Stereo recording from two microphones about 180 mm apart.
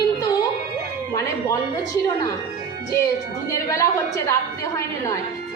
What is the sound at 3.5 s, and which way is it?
Speech, 15° left (ahead or behind).